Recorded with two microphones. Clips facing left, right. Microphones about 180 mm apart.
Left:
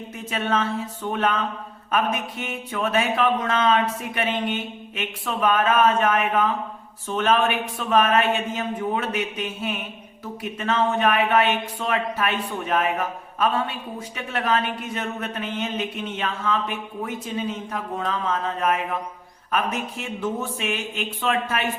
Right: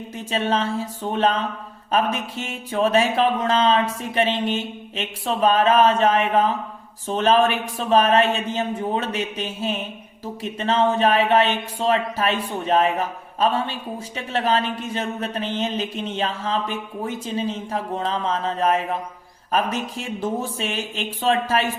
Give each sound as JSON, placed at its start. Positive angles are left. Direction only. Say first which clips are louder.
{"t": 0.3, "sound": "speech", "louder": "right 2 dB", "side_deg": -30}